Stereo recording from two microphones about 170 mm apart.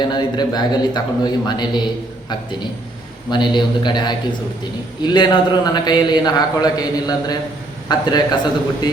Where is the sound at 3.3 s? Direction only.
25° left (ahead or behind).